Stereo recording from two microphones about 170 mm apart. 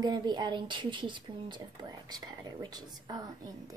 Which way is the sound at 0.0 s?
25° right (ahead or behind).